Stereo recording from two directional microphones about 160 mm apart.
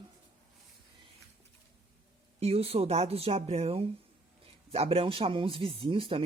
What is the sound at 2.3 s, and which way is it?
Speech, 40° right (ahead or behind).